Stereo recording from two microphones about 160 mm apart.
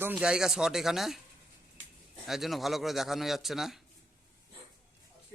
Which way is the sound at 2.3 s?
Centre (ahead or behind).